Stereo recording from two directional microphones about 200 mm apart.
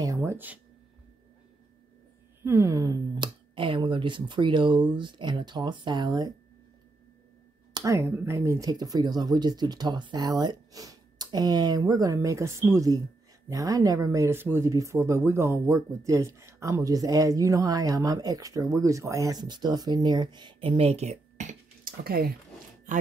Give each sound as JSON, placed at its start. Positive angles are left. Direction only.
{"t": 0.0, "sound": "a sound", "side_deg": -15}
{"t": 2.4, "sound": "speech", "side_deg": -15}
{"t": 7.7, "sound": "speech", "side_deg": -15}